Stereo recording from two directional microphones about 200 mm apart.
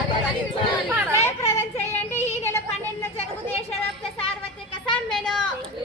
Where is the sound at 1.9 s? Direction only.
10° left (ahead or behind).